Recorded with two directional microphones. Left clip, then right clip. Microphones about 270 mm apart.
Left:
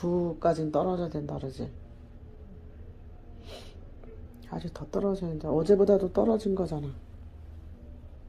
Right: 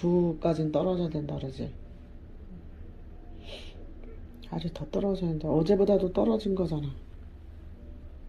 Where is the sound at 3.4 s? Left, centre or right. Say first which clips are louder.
Right 2 dB; left.